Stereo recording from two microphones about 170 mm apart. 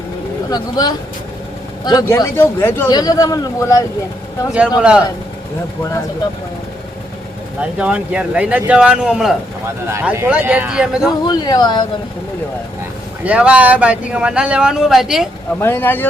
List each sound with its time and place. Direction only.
0.5 s speech: 25° left (ahead or behind)
4.8 s speech: 5° right (ahead or behind)
7.6 s speech: 5° right (ahead or behind)
11.3 s speech: 25° left (ahead or behind)
13.2 s speech: 5° right (ahead or behind)
15.6 s speech: 10° left (ahead or behind)